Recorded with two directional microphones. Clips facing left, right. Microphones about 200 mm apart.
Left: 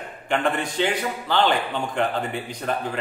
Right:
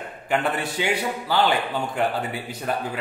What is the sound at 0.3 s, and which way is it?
A man's voice, 5° right (ahead or behind).